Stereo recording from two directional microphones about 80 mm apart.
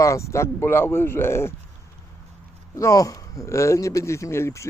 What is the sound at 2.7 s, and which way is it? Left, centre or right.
Speech, left.